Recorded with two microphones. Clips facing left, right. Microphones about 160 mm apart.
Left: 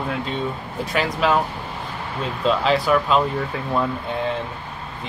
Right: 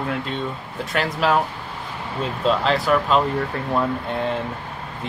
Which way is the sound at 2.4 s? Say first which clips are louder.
Left 1 dB; centre (ahead or behind).